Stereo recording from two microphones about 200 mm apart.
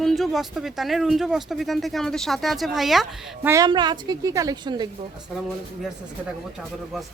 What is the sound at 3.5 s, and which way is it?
A woman's voice, 20° right (ahead or behind).